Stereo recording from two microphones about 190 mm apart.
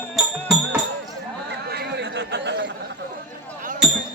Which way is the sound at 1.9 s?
65° right (ahead or behind).